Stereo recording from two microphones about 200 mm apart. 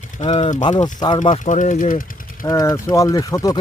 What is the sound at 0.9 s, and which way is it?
Speech, 20° left (ahead or behind).